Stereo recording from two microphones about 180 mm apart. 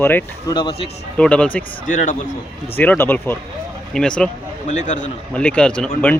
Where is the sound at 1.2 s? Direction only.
5° left (ahead or behind).